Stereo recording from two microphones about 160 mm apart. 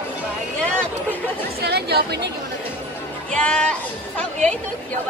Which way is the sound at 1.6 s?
90° right.